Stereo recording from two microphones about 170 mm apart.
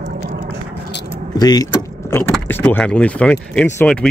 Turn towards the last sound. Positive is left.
turn(degrees=10)  # may be behind; listen again after turning